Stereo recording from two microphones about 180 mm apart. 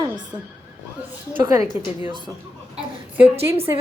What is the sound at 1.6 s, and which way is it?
Speech, 25° left (ahead or behind).